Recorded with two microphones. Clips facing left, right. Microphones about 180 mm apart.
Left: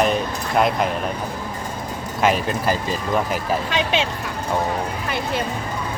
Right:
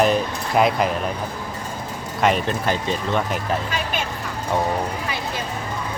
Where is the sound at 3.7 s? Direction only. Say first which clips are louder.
Left 5 dB; 80° left.